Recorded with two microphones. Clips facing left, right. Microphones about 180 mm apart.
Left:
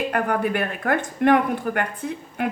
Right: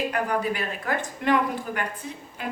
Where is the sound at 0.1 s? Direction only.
55° left (ahead or behind).